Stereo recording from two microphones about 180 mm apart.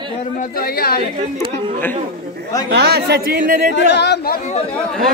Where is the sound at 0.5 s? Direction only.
55° left (ahead or behind).